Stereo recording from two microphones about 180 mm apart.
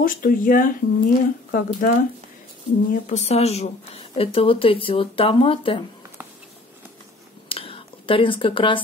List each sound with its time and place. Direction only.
0.0 s speech: 50° left (ahead or behind)
2.9 s a woman's voice: 40° left (ahead or behind)
7.4 s a sound: 30° left (ahead or behind)